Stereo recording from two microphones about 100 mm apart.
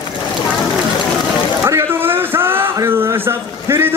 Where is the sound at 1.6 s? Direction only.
25° right (ahead or behind).